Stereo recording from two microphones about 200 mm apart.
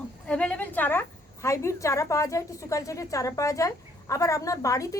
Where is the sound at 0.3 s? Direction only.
5° left (ahead or behind).